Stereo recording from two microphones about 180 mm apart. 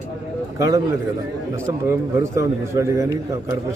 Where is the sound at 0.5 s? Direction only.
20° right (ahead or behind).